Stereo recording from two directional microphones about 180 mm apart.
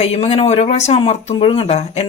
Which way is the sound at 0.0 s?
35° left (ahead or behind).